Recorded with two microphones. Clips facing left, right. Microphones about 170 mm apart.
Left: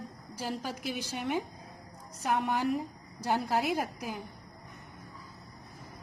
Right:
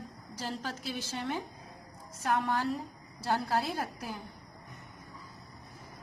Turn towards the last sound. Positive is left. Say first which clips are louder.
# left 4 dB
turn(degrees=15)  # may be behind; listen again after turning